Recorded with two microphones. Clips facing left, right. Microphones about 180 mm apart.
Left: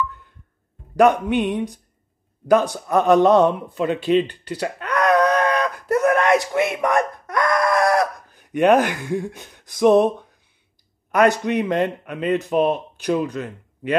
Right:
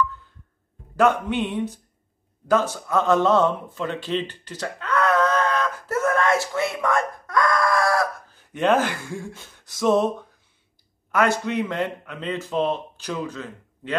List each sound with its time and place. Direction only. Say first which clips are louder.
0.9 s a man's voice: left 4 dB; 15° left (ahead or behind)
2.4 s a sound: left 4 dB; 15° left (ahead or behind)
11.1 s a man's voice: left 5 dB; 15° left (ahead or behind)